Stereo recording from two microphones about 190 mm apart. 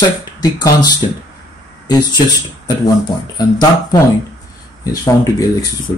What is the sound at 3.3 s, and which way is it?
A man's voice, 20° left (ahead or behind).